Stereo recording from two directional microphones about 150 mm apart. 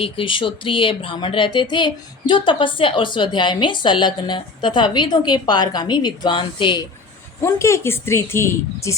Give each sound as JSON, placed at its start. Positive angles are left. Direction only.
{"t": 0.0, "sound": "speech", "side_deg": 35}
{"t": 7.4, "sound": "a woman's voice", "side_deg": 20}